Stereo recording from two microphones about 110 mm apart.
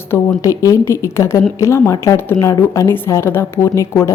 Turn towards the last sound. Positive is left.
turn(degrees=30)  # may be behind; listen again after turning